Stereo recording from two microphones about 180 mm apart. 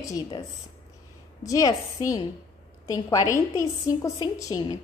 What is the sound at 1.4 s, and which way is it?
A woman's voice, 20° left (ahead or behind).